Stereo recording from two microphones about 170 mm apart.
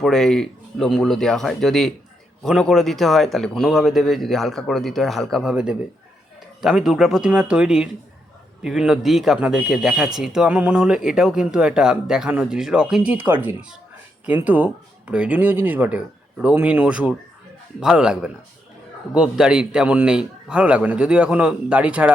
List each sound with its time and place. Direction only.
0.0 s a man's voice: centre (ahead or behind)